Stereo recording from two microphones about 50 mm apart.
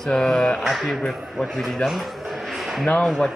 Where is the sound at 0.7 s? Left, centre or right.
Centre.